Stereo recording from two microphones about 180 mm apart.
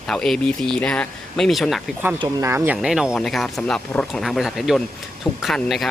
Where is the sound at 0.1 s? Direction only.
5° left (ahead or behind).